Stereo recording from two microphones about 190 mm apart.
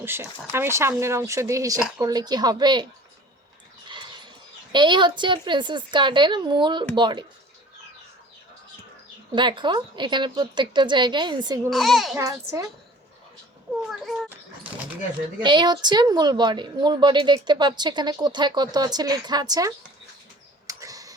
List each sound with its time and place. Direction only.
0.0 s a woman's voice: 10° right (ahead or behind)
3.8 s a sound: 25° right (ahead or behind)
4.7 s a woman's voice: 25° right (ahead or behind)
9.3 s a woman's voice: 25° right (ahead or behind)
11.7 s a child's voice: centre (ahead or behind)
12.1 s speech: 15° right (ahead or behind)
13.8 s a child's voice: centre (ahead or behind)
15.4 s a woman's voice: 25° right (ahead or behind)
20.7 s a sound: 15° right (ahead or behind)